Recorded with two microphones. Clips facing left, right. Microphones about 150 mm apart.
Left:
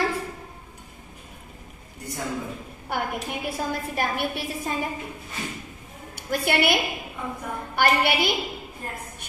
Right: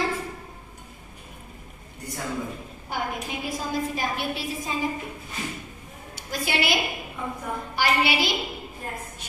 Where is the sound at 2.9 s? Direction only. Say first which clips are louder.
Left 2 dB; 60° left (ahead or behind).